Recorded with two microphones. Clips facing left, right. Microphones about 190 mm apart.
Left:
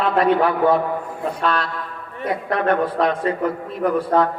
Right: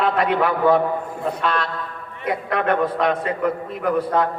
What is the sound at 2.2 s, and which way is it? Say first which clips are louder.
A man's voice: left 1 dB; 30° left (ahead or behind).